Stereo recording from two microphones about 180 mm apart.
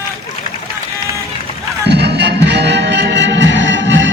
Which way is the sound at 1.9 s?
65° right (ahead or behind).